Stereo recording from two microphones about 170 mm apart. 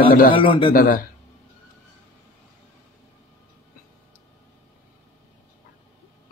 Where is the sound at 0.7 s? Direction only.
55° left (ahead or behind).